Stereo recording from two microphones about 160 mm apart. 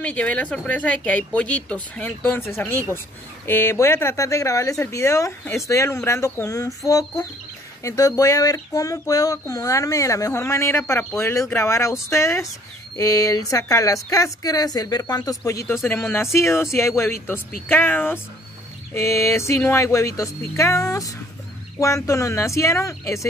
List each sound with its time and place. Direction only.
0.0 s speech: 10° left (ahead or behind)